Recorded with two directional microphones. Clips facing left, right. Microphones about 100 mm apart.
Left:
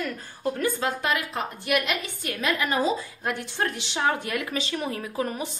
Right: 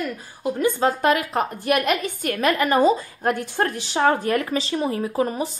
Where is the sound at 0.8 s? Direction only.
45° right (ahead or behind).